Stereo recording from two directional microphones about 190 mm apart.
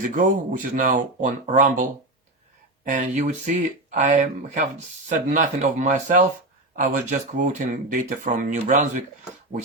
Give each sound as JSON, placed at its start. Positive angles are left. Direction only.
{"t": 0.2, "sound": "speech", "side_deg": -45}